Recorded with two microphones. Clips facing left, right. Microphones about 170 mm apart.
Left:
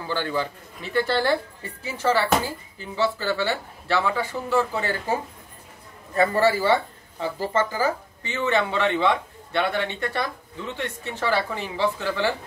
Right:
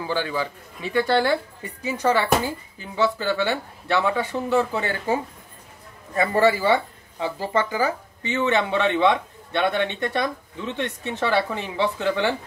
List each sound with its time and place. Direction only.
0.0 s a woman's voice: 15° right (ahead or behind)
6.1 s speech: 15° right (ahead or behind)